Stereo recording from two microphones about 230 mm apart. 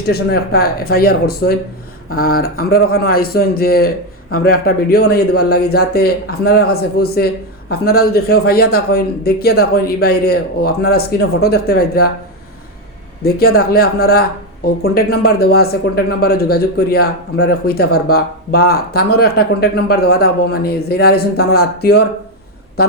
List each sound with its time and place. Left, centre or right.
0.1 s a man's voice: left
13.2 s speech: left